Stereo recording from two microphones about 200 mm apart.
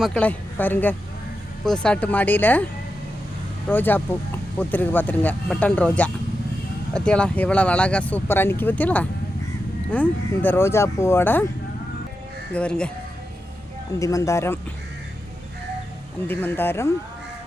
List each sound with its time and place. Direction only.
0.0 s speech: 5° left (ahead or behind)
3.7 s speech: 10° left (ahead or behind)
12.5 s speech: 5° left (ahead or behind)
14.0 s speech: 15° left (ahead or behind)
16.2 s speech: 10° left (ahead or behind)